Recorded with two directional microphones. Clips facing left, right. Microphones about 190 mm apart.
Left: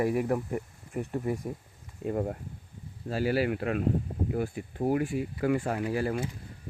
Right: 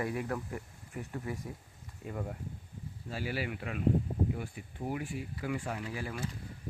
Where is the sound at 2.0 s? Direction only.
45° left (ahead or behind).